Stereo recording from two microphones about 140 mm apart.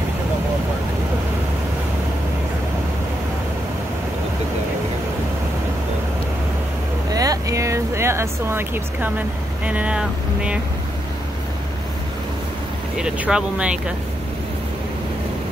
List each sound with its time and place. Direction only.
7.1 s vehicle: 25° right (ahead or behind)
9.7 s speech: 10° right (ahead or behind)
12.9 s speech: 5° right (ahead or behind)